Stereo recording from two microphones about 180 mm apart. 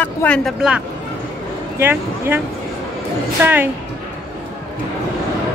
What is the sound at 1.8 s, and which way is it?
Speech, 10° right (ahead or behind).